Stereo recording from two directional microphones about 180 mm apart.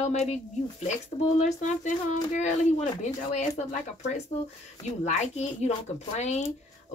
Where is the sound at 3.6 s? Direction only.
40° left (ahead or behind).